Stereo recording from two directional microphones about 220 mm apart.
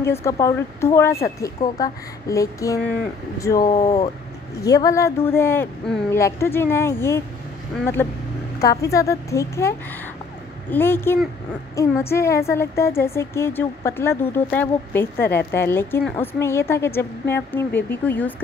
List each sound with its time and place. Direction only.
0.0 s a woman's voice: 10° left (ahead or behind)